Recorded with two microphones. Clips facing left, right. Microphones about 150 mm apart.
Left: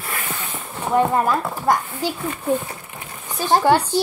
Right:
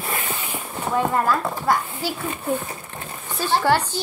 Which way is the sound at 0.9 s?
20° left (ahead or behind).